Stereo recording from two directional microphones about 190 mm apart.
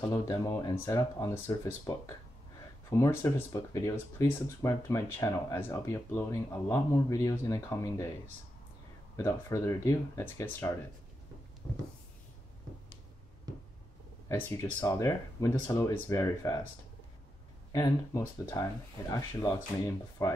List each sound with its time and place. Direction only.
0.1 s speech: 20° left (ahead or behind)
9.1 s speech: 15° left (ahead or behind)
14.3 s speech: 15° left (ahead or behind)
17.7 s speech: 15° left (ahead or behind)